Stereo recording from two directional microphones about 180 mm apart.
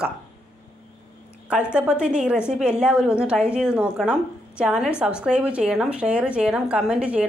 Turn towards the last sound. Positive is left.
turn(degrees=-5)  # may be behind; listen again after turning